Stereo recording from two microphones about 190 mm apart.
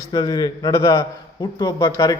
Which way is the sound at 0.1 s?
20° left (ahead or behind).